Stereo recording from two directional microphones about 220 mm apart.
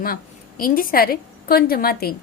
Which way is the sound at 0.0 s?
40° left (ahead or behind).